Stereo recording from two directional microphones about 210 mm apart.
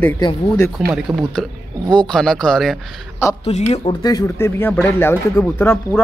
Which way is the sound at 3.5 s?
30° left (ahead or behind).